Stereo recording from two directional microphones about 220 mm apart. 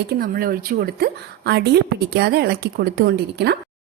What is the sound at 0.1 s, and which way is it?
Speech, 40° right (ahead or behind).